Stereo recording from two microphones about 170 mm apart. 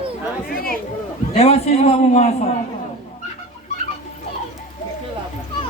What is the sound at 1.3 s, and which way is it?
Speech, 35° left (ahead or behind).